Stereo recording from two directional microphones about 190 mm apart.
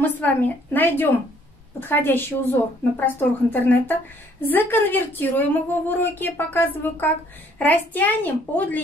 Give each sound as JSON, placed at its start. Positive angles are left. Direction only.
{"t": 0.0, "sound": "a woman's voice", "side_deg": 10}